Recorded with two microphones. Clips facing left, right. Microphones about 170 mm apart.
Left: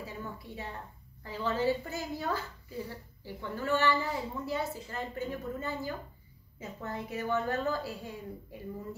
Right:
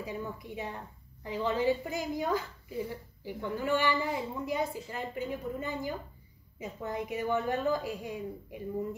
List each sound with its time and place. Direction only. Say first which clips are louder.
0.0 s a woman's voice: right 4 dB; 15° right (ahead or behind)